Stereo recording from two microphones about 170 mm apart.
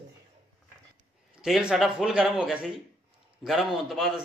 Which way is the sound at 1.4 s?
Centre (ahead or behind).